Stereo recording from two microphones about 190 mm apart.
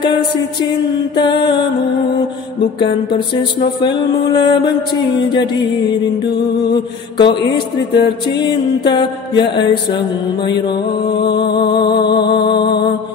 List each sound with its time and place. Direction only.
1.1 s mantra: 25° left (ahead or behind)
2.6 s mantra: 25° left (ahead or behind)
6.6 s mantra: 25° left (ahead or behind)
11.5 s mantra: 25° left (ahead or behind)